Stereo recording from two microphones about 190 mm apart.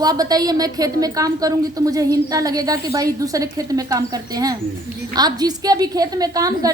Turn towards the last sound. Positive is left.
turn(degrees=-20)  # may be behind; listen again after turning